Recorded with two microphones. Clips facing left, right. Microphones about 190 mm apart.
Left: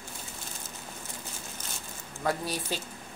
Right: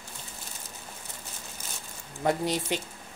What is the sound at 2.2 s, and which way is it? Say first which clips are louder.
Speech: right 4 dB; 20° right (ahead or behind).